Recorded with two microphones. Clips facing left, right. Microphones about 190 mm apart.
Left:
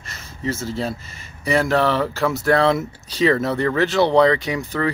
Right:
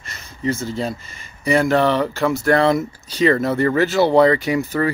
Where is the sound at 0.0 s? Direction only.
Centre (ahead or behind).